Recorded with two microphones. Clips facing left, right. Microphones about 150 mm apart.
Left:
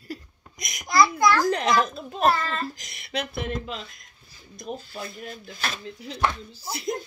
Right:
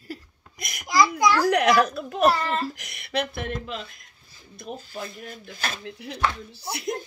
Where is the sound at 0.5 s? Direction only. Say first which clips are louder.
Right 1 dB; 60° right (ahead or behind).